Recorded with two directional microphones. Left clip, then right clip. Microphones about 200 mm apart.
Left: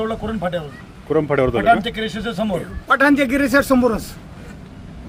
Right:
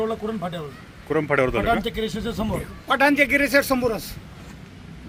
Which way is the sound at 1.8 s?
5° right (ahead or behind).